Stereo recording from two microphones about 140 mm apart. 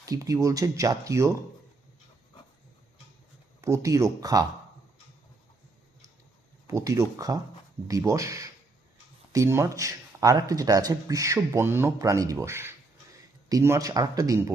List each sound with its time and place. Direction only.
0.0 s speech: 25° right (ahead or behind)
3.6 s speech: 25° right (ahead or behind)
6.7 s speech: 25° right (ahead or behind)